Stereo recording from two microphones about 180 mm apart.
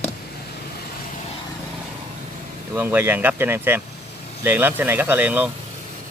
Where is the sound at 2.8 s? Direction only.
10° right (ahead or behind).